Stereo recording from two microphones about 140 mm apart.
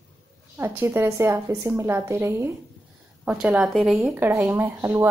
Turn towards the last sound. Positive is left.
turn(degrees=-15)  # may be behind; listen again after turning